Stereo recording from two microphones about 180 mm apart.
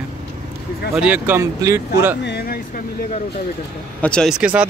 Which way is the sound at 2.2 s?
65° left (ahead or behind).